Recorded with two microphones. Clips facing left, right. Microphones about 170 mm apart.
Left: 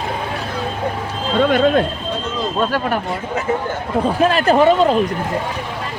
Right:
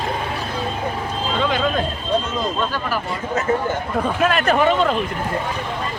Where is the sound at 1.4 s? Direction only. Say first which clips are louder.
Left 7 dB; 55° left (ahead or behind).